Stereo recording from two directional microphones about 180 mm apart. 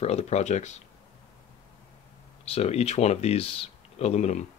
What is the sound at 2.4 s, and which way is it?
Speech, 35° left (ahead or behind).